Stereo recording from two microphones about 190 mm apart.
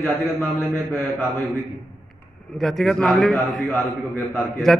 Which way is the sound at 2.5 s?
Centre (ahead or behind).